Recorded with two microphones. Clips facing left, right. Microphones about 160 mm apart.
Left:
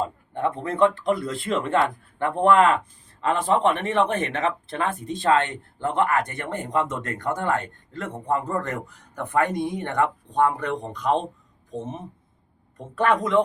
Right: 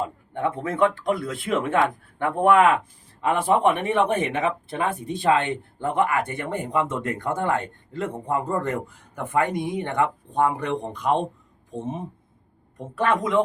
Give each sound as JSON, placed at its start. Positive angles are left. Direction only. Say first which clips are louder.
{"t": 0.5, "sound": "a man's voice", "louder": "left 2 dB", "side_deg": -5}